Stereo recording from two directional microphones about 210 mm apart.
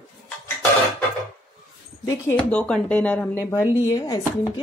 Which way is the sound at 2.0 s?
10° left (ahead or behind).